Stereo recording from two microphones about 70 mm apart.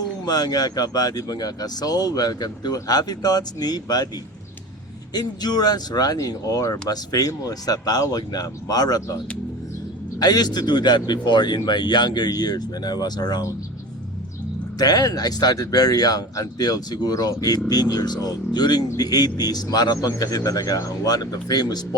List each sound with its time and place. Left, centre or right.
0.3 s speech: left
5.1 s speech: left
10.2 s a man's voice: left
14.8 s speech: left